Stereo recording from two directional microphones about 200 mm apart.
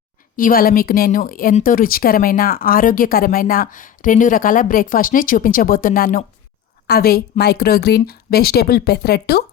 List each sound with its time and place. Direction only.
0.3 s a woman's voice: 45° left (ahead or behind)